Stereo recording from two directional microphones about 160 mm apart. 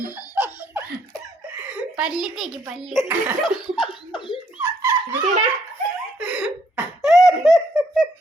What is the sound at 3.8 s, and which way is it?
Laughter, 30° left (ahead or behind).